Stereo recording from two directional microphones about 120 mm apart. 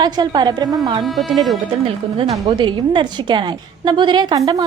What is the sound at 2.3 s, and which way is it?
A woman's voice, 35° right (ahead or behind).